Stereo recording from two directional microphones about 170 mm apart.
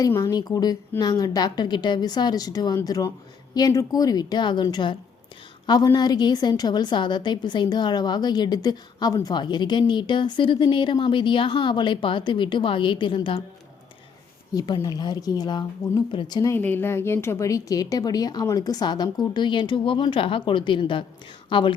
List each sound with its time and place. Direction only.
0.0 s a woman's voice: 20° left (ahead or behind)
14.5 s a woman's voice: 25° left (ahead or behind)